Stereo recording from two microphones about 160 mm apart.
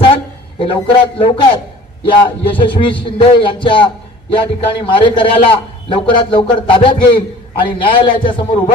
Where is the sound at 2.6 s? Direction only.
30° left (ahead or behind).